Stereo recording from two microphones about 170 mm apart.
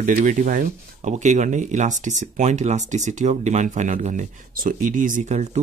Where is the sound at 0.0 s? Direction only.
50° right (ahead or behind).